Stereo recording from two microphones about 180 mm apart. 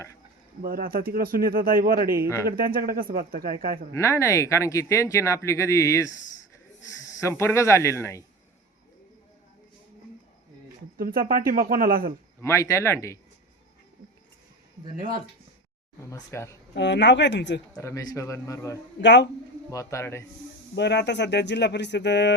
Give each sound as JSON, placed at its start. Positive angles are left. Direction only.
{"t": 0.6, "sound": "speech", "side_deg": -55}
{"t": 3.9, "sound": "speech", "side_deg": 15}
{"t": 7.2, "sound": "speech", "side_deg": 15}
{"t": 10.9, "sound": "speech", "side_deg": -55}
{"t": 12.4, "sound": "speech", "side_deg": 15}
{"t": 14.9, "sound": "speech", "side_deg": -50}
{"t": 16.0, "sound": "speech", "side_deg": 20}
{"t": 16.7, "sound": "speech", "side_deg": 75}
{"t": 17.7, "sound": "speech", "side_deg": 20}
{"t": 19.0, "sound": "speech", "side_deg": 75}
{"t": 19.7, "sound": "speech", "side_deg": 15}
{"t": 20.7, "sound": "speech", "side_deg": 70}